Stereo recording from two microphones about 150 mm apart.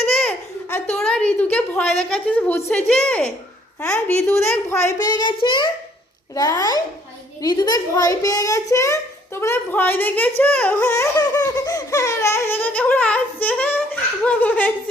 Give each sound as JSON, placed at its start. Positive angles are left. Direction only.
{"t": 0.2, "sound": "baby laughter", "side_deg": 10}
{"t": 0.9, "sound": "a sound", "side_deg": 5}
{"t": 2.8, "sound": "a woman's voice", "side_deg": 5}
{"t": 4.3, "sound": "a child's voice", "side_deg": 15}